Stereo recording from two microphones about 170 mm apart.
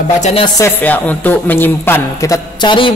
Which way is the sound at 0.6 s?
10° left (ahead or behind).